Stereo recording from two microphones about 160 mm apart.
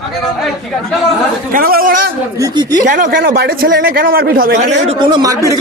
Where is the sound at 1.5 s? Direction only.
65° right (ahead or behind).